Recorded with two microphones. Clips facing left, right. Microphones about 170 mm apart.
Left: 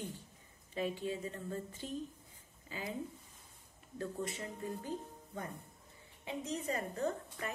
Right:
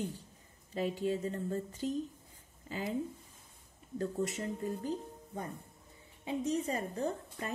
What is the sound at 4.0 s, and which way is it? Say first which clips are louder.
Speech: right 5 dB; 40° right (ahead or behind).